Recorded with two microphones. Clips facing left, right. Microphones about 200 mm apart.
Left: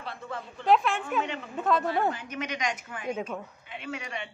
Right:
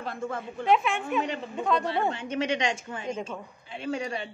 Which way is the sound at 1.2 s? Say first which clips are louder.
Right 3 dB; 35° right (ahead or behind).